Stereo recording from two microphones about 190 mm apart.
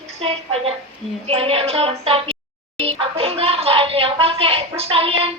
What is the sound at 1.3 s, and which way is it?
A woman's voice, 30° right (ahead or behind).